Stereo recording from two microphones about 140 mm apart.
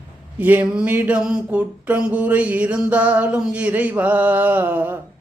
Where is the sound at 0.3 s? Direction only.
10° right (ahead or behind).